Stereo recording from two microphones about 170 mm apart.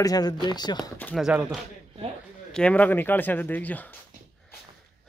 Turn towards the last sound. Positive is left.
turn(degrees=10)  # may be behind; listen again after turning